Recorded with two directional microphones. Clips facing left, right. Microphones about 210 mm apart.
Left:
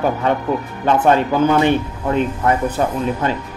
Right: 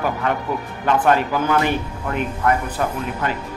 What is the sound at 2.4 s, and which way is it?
Speech, 25° left (ahead or behind).